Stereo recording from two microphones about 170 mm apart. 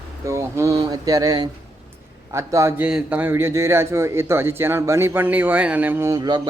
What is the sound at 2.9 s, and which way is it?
A man's voice, 5° right (ahead or behind).